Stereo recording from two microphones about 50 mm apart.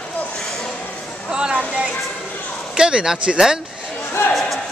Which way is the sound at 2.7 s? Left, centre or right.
Centre.